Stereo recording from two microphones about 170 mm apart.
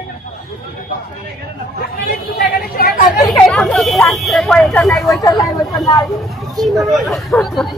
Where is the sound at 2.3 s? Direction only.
65° left (ahead or behind).